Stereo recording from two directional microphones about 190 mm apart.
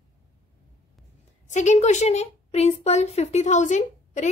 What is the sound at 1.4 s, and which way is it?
Speech, 40° left (ahead or behind).